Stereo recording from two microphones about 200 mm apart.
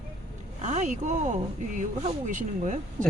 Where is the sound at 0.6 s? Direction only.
35° right (ahead or behind).